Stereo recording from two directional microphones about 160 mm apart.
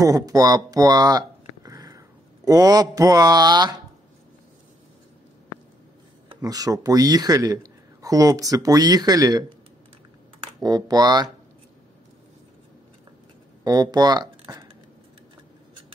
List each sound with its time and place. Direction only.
0.0 s speech: 20° right (ahead or behind)
6.4 s a man's voice: 20° right (ahead or behind)
10.6 s a man's voice: 25° right (ahead or behind)
13.7 s speech: 25° right (ahead or behind)